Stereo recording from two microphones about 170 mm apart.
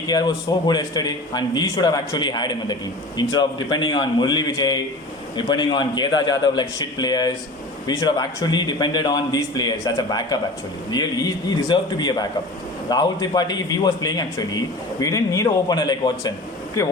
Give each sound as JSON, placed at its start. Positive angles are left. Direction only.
{"t": 0.1, "sound": "a man's voice", "side_deg": 25}